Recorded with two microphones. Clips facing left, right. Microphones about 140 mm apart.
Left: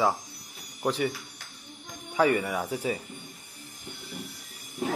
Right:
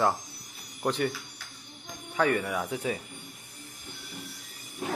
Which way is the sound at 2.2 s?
5° left (ahead or behind).